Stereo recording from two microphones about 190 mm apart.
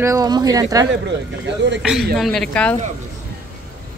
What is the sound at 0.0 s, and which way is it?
Speech, 15° right (ahead or behind).